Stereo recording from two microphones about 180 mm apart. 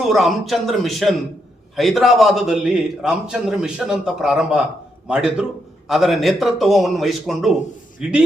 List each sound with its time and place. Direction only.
0.0 s a man's voice: centre (ahead or behind)